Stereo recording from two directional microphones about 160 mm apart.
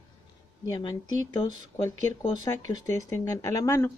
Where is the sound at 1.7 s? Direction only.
20° left (ahead or behind).